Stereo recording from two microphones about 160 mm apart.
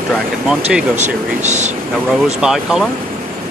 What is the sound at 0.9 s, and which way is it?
Speech, 45° right (ahead or behind).